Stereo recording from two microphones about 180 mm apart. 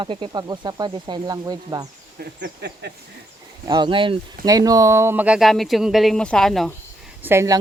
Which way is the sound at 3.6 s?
25° right (ahead or behind).